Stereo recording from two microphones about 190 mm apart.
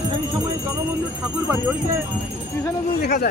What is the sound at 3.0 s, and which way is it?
Speech, 55° left (ahead or behind).